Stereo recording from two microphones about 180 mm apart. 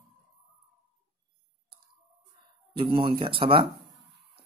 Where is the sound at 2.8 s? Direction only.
30° right (ahead or behind).